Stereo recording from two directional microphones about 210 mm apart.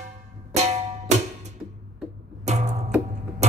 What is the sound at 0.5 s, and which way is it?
Music, 30° right (ahead or behind).